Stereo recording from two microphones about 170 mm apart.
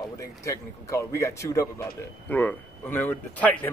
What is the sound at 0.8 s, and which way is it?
Speech, 15° left (ahead or behind).